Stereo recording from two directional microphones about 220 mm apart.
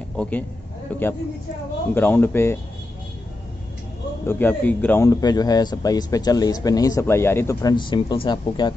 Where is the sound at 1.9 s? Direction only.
10° left (ahead or behind).